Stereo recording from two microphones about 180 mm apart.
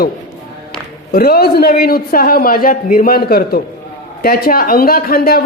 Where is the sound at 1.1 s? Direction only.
60° left (ahead or behind).